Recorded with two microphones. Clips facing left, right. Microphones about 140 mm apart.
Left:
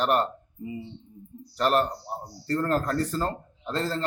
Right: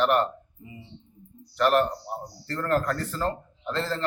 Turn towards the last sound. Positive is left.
turn(degrees=35)  # may be behind; listen again after turning